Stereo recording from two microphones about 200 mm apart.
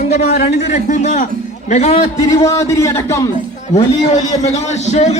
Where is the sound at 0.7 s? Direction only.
35° left (ahead or behind).